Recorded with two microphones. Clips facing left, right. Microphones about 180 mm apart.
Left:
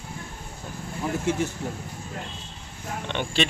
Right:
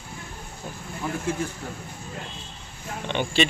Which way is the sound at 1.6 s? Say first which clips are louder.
Left 4 dB; 20° left (ahead or behind).